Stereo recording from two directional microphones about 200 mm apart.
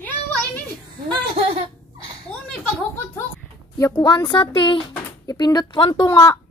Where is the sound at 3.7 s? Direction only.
15° left (ahead or behind).